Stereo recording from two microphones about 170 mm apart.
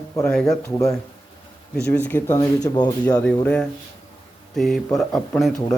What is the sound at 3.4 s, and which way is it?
Speech, 5° left (ahead or behind).